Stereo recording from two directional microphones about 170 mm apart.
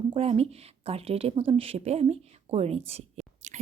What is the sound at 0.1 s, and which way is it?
Speech, 35° right (ahead or behind).